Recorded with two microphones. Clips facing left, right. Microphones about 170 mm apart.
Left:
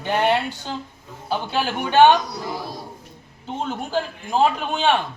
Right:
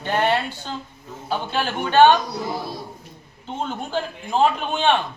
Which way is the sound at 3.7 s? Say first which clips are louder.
Left 3 dB; 5° left (ahead or behind).